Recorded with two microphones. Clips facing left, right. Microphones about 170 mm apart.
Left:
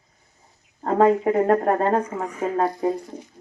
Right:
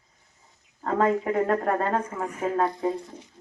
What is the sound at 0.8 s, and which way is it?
A woman's voice, 40° left (ahead or behind).